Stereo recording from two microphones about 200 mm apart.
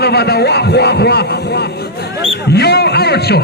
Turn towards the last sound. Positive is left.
turn(degrees=55)  # may be behind; listen again after turning